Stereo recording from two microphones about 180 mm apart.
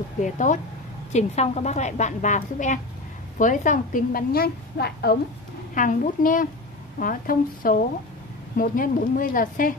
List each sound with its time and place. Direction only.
0.2 s a woman's voice: 45° left (ahead or behind); by 5.1 s 60° left (ahead or behind)
5.8 s a woman's voice: 45° left (ahead or behind)